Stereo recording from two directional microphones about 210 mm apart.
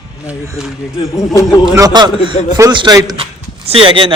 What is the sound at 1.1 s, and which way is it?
Speech, 15° left (ahead or behind).